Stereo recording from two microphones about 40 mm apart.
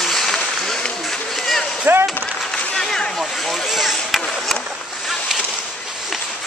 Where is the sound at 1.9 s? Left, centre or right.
Right.